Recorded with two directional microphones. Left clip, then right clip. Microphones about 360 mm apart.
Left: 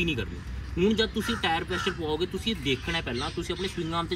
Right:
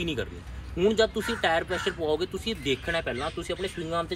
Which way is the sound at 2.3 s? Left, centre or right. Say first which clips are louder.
Even; centre.